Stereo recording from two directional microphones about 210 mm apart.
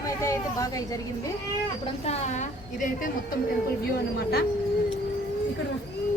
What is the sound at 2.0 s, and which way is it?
Speech, 35° left (ahead or behind).